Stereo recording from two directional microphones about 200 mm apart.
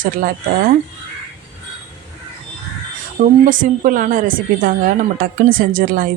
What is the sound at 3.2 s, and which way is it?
A woman's voice, 40° right (ahead or behind).